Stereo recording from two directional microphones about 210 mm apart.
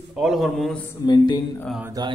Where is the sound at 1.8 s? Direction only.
15° right (ahead or behind).